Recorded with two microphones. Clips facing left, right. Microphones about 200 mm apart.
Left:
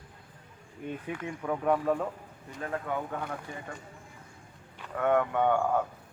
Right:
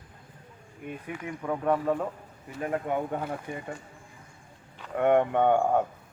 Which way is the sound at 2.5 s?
15° right (ahead or behind).